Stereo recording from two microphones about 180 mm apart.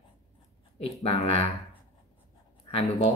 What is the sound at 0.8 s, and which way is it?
Speech, 30° left (ahead or behind).